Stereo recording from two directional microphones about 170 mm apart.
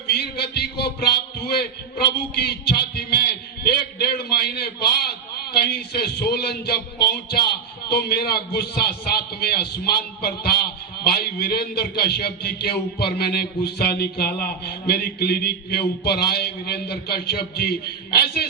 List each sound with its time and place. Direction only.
0.1 s a man's voice: 70° left (ahead or behind)